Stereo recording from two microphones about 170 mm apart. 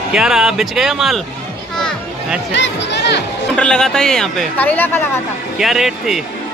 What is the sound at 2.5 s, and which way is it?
Speech, 90° left.